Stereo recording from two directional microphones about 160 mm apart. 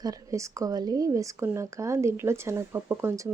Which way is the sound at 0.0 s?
20° right (ahead or behind).